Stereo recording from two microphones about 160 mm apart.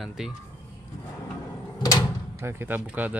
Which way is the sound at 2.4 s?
15° right (ahead or behind).